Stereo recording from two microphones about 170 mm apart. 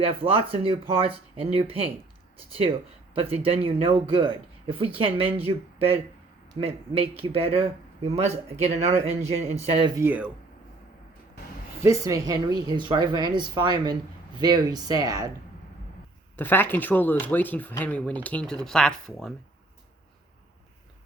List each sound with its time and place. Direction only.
0.0 s speech: 30° right (ahead or behind)
9.8 s speech: 15° right (ahead or behind)
11.8 s speech: 20° right (ahead or behind)
16.4 s speech: 10° left (ahead or behind)